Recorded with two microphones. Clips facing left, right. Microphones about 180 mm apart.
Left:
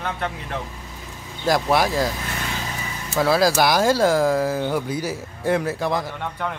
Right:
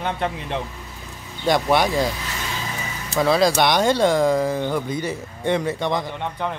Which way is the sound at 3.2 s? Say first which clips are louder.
Even; 5° left (ahead or behind).